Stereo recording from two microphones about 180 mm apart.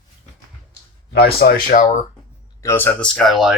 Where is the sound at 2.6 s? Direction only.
15° left (ahead or behind).